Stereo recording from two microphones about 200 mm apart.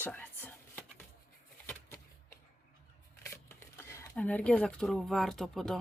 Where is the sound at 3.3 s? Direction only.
10° left (ahead or behind).